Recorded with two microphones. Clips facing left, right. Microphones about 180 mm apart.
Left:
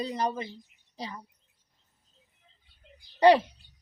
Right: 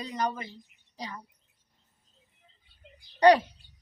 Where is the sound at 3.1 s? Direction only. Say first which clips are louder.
Even; 5° left (ahead or behind).